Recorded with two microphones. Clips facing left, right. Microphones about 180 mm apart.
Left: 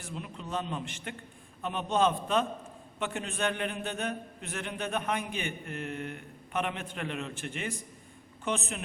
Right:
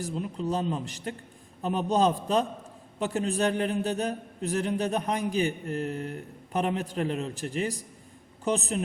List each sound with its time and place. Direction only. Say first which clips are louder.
0.0 s a man's voice: right 9 dB; 35° right (ahead or behind)